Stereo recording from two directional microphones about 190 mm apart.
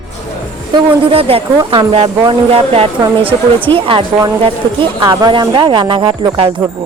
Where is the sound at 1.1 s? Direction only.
30° right (ahead or behind).